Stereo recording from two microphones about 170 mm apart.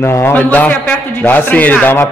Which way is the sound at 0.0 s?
15° left (ahead or behind).